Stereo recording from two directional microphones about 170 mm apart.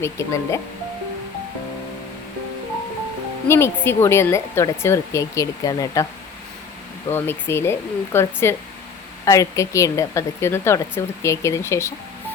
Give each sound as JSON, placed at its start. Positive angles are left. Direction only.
{"t": 0.0, "sound": "speech", "side_deg": 15}
{"t": 3.5, "sound": "speech", "side_deg": 15}
{"t": 7.1, "sound": "speech", "side_deg": 15}